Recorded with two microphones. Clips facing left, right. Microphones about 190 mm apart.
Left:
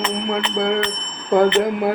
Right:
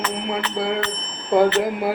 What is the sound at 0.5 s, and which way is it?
Speech, 5° right (ahead or behind).